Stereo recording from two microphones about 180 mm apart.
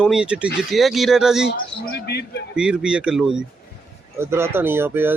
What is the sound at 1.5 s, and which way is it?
Speech, 65° left (ahead or behind).